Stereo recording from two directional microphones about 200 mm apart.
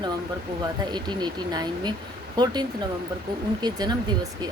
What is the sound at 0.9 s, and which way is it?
Speech, 20° right (ahead or behind).